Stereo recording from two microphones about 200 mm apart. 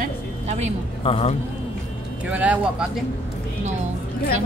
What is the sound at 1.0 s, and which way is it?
Speech, 30° left (ahead or behind).